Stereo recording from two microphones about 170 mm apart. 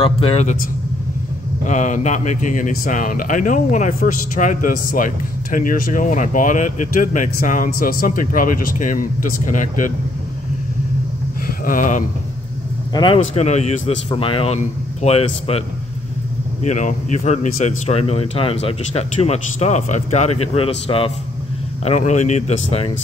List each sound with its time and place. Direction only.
0.0 s a man's voice: 35° left (ahead or behind)
1.7 s speech: 45° left (ahead or behind)
11.4 s speech: 55° left (ahead or behind)
12.9 s speech: 30° left (ahead or behind)
13.2 s a man's voice: 40° left (ahead or behind)
16.6 s a man's voice: 45° left (ahead or behind)